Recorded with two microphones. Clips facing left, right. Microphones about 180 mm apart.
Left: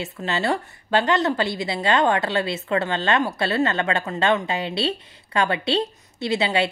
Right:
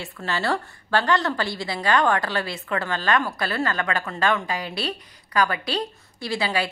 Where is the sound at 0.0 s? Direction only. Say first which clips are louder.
Left 2 dB; 20° left (ahead or behind).